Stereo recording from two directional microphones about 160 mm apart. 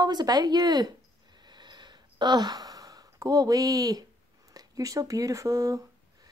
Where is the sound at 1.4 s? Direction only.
25° right (ahead or behind).